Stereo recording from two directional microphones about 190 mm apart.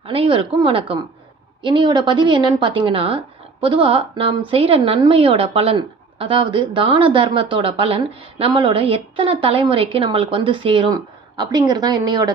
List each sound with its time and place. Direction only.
0.0 s a woman's voice: 30° right (ahead or behind)